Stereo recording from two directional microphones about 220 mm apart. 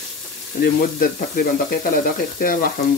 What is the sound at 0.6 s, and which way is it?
Frying, 45° left (ahead or behind).